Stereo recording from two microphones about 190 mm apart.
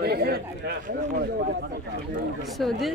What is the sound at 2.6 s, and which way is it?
Speech, centre (ahead or behind).